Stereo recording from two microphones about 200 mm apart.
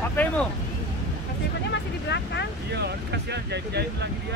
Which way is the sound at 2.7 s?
55° right (ahead or behind).